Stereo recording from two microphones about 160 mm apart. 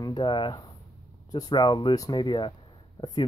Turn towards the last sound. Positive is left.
turn(degrees=30)  # may be behind; listen again after turning